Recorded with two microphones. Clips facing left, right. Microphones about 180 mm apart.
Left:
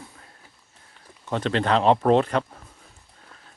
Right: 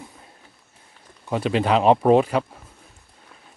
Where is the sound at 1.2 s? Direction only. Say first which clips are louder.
Right 2 dB; 10° right (ahead or behind).